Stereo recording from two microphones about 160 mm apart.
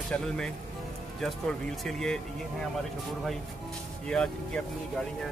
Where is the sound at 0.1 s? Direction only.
10° left (ahead or behind).